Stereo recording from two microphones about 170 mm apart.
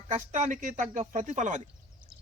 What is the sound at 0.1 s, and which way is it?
Speech, 45° right (ahead or behind).